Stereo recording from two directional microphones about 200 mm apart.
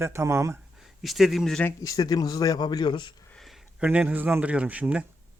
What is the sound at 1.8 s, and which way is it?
A man's voice, 20° left (ahead or behind).